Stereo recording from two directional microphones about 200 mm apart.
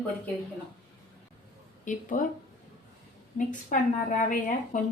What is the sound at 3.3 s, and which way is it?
A woman's voice, 40° left (ahead or behind).